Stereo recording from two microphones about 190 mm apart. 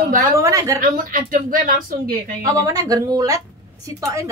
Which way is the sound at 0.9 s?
45° right (ahead or behind).